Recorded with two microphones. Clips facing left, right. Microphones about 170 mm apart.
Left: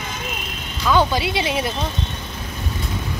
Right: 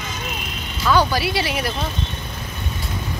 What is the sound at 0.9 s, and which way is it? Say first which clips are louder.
Speech: even; 20° left (ahead or behind).